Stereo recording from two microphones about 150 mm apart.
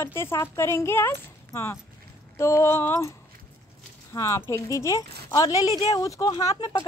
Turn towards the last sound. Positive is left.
turn(degrees=25)  # may be behind; listen again after turning